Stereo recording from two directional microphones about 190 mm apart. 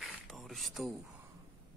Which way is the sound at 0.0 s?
Centre (ahead or behind).